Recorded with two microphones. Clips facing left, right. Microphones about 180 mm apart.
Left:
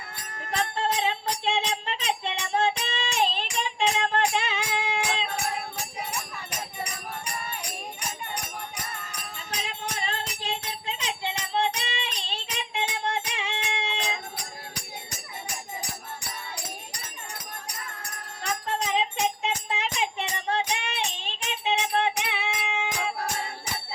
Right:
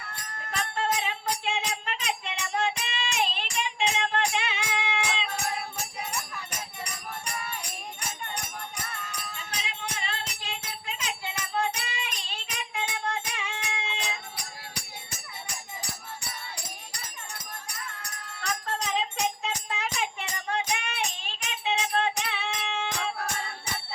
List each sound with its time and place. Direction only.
0.9 s music: 30° left (ahead or behind)
9.6 s music: 40° left (ahead or behind); by 14.2 s 20° left (ahead or behind)
18.9 s music: 20° left (ahead or behind)